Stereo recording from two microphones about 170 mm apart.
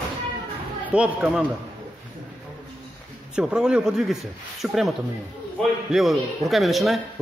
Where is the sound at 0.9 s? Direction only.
10° right (ahead or behind).